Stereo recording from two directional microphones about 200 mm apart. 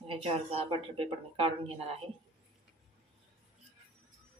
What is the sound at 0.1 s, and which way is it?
A woman's voice, 30° right (ahead or behind).